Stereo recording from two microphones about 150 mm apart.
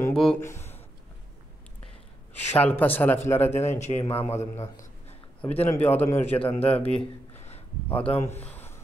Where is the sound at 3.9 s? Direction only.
40° left (ahead or behind).